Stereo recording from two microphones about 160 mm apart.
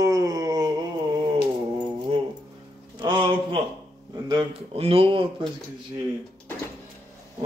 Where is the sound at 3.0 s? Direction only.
30° right (ahead or behind).